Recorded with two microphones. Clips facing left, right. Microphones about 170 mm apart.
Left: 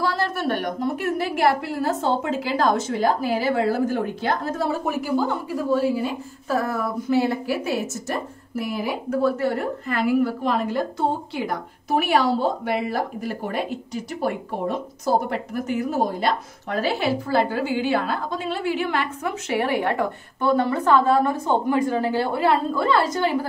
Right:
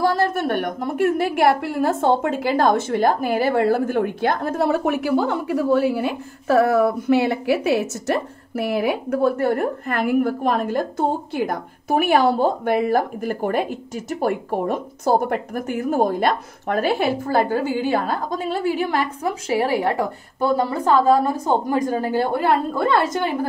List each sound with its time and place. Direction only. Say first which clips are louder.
0.0 s a woman's voice: right 4 dB; 50° right (ahead or behind)